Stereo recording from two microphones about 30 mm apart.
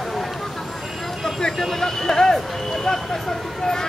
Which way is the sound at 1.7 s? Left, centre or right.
Centre.